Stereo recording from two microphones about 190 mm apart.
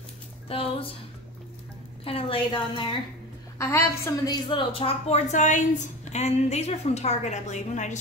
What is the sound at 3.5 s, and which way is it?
A woman's voice, 15° left (ahead or behind).